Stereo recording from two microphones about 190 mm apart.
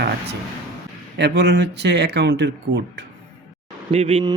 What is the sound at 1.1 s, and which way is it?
Speech, 60° right (ahead or behind).